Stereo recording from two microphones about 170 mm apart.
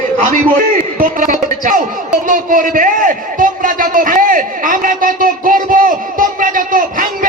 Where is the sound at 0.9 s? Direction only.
50° right (ahead or behind).